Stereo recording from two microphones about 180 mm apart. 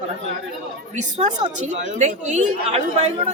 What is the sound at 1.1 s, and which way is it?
A woman's voice, 40° right (ahead or behind).